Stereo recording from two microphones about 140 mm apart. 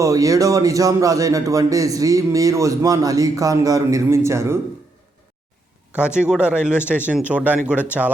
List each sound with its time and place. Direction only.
0.0 s a man's voice: 25° right (ahead or behind)
6.0 s speech: 5° right (ahead or behind)